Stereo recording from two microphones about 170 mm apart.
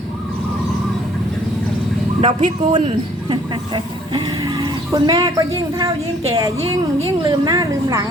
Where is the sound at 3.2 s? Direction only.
25° right (ahead or behind).